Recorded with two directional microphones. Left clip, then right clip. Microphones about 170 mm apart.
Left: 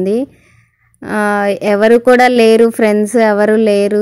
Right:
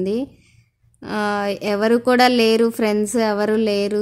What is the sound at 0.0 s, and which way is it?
Speech, 15° left (ahead or behind).